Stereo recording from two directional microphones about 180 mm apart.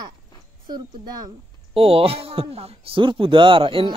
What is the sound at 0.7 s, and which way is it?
Speech, 25° right (ahead or behind).